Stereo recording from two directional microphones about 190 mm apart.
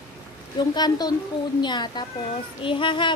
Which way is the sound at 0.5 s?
20° left (ahead or behind).